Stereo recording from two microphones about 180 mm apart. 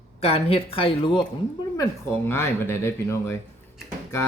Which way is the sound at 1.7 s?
15° left (ahead or behind).